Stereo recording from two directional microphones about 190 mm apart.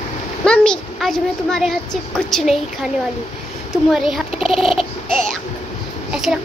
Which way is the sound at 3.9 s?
Centre (ahead or behind).